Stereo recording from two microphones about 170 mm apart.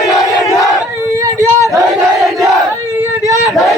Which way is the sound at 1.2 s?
20° right (ahead or behind).